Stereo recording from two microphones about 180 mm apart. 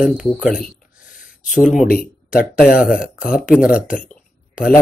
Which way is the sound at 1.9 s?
55° left (ahead or behind).